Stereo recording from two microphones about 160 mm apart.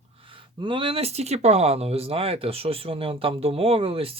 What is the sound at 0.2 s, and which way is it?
Speech, 35° right (ahead or behind).